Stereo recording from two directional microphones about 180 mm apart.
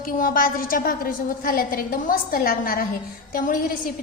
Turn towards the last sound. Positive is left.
turn(degrees=50)  # may be behind; listen again after turning